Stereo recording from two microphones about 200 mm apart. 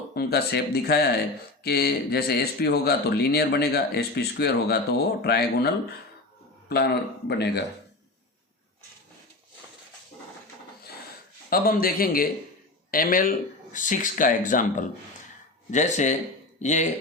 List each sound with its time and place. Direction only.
0.1 s speech: 50° left (ahead or behind)
11.4 s speech: 45° left (ahead or behind)